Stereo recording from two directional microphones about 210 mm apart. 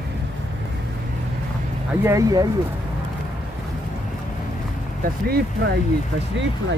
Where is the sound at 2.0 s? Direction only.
15° right (ahead or behind).